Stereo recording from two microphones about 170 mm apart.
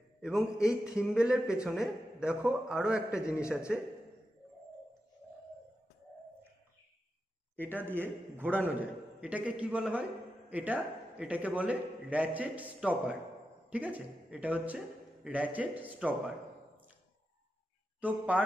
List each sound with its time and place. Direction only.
0.2 s a man's voice: 5° right (ahead or behind)
7.6 s a man's voice: 10° right (ahead or behind)
18.0 s a man's voice: 10° right (ahead or behind)